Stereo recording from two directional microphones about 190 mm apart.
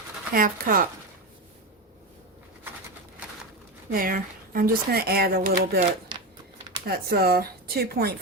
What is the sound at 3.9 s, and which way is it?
Speech, 50° right (ahead or behind).